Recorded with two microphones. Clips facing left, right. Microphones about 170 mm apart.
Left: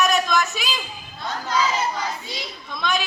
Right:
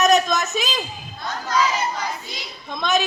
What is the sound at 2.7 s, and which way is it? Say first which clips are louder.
Speech: right 4 dB; 45° right (ahead or behind).